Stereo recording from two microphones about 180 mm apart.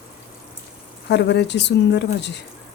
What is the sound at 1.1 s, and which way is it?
Speech, 75° left (ahead or behind).